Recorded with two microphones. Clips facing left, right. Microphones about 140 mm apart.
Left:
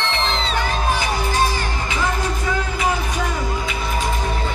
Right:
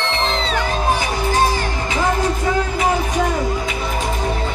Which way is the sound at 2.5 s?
35° right (ahead or behind).